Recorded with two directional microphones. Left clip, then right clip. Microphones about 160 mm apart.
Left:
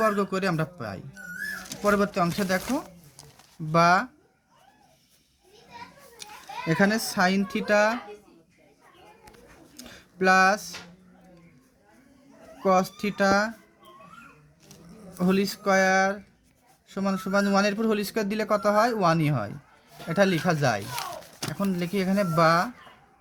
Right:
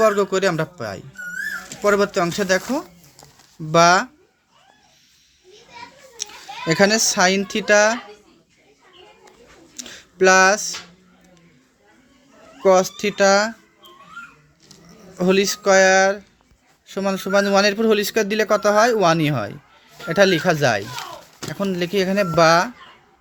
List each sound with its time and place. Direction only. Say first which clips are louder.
0.0 s speech: right 8 dB; 40° right (ahead or behind)
6.7 s speech: right 8 dB; 45° right (ahead or behind)
9.8 s a sound: right 8 dB; 40° right (ahead or behind)
12.6 s speech: right 8 dB; 30° right (ahead or behind)
15.2 s speech: right 9 dB; 35° right (ahead or behind)